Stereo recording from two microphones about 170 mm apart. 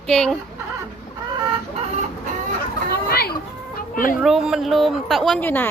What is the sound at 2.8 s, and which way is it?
Children playing, 65° left (ahead or behind).